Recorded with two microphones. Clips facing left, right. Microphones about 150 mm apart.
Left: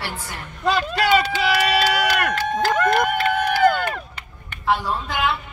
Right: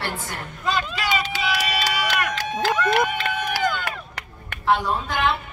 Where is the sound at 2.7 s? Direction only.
55° left (ahead or behind).